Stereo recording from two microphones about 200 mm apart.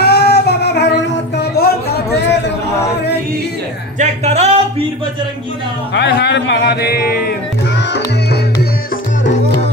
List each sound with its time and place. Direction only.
0.0 s a sound: 55° left (ahead or behind)
4.0 s music: 35° right (ahead or behind)
5.9 s speech: 55° left (ahead or behind)